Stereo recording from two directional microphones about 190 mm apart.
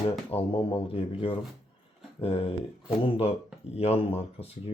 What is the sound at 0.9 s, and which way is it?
Speech, 30° left (ahead or behind).